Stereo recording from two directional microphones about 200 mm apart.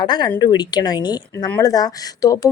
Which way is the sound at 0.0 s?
20° left (ahead or behind).